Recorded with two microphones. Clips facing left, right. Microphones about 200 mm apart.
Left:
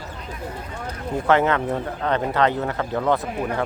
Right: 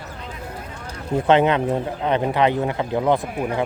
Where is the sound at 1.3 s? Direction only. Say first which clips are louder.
Right 2 dB; 20° right (ahead or behind).